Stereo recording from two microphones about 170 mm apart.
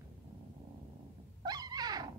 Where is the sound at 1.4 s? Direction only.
25° right (ahead or behind).